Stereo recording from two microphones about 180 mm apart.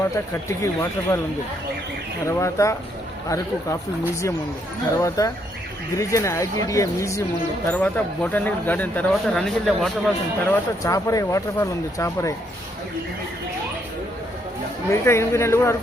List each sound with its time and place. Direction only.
0.4 s speech: 15° left (ahead or behind)
2.2 s speech: 15° left (ahead or behind)
4.9 s speech: 20° left (ahead or behind); by 10.1 s centre (ahead or behind)
10.4 s speech: 15° left (ahead or behind)
14.8 s speech: 15° left (ahead or behind)